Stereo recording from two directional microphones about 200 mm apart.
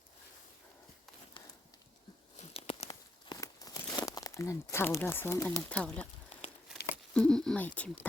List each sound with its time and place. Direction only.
2.5 s a sound: 30° left (ahead or behind)
3.3 s speech: 15° left (ahead or behind)
7.1 s speech: 5° left (ahead or behind)